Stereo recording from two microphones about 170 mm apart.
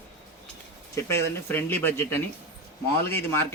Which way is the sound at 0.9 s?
15° left (ahead or behind).